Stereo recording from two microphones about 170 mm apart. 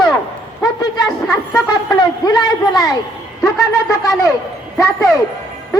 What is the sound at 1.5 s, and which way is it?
A woman's voice, 20° left (ahead or behind).